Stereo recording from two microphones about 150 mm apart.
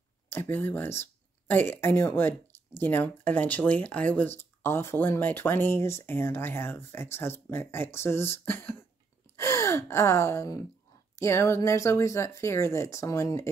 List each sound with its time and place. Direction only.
0.3 s speech: 15° left (ahead or behind)